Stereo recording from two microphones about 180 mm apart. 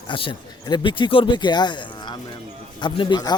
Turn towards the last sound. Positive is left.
turn(degrees=25)  # may be behind; listen again after turning